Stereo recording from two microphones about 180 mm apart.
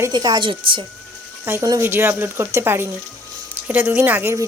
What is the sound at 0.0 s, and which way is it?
Speech, 20° right (ahead or behind).